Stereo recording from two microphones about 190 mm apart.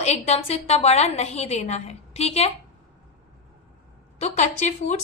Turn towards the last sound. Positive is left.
turn(degrees=35)  # may be behind; listen again after turning